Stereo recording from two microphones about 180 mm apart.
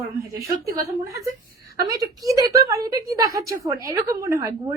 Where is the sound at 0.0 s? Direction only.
20° right (ahead or behind).